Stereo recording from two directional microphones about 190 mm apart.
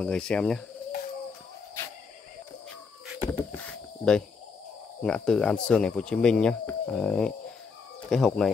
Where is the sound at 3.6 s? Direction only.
5° left (ahead or behind).